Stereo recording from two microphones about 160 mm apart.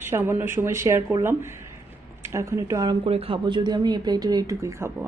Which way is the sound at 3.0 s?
35° right (ahead or behind).